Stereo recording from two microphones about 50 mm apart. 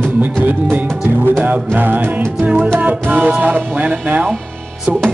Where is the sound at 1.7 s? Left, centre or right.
Right.